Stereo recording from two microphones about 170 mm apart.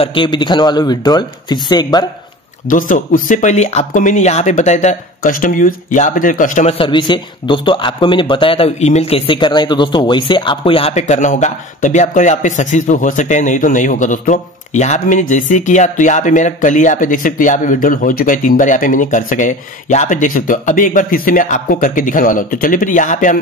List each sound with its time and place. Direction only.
0.0 s speech: 30° left (ahead or behind)
2.7 s speech: 50° left (ahead or behind)